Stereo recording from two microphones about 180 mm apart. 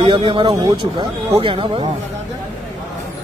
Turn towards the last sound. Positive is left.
turn(degrees=-30)  # may be behind; listen again after turning